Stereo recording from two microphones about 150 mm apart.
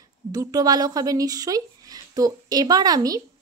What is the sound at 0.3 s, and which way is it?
Speech, 25° right (ahead or behind).